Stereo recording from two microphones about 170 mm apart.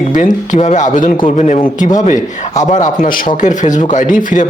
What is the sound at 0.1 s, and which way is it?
A man's voice, 50° left (ahead or behind).